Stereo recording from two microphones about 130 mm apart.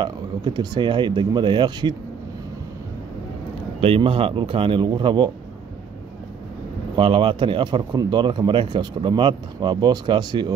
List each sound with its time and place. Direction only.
0.0 s speech: 35° right (ahead or behind)
3.8 s speech: 45° right (ahead or behind)
7.0 s speech: 40° right (ahead or behind)